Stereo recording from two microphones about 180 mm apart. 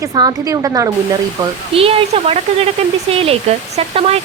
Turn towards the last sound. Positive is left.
turn(degrees=-35)  # may be behind; listen again after turning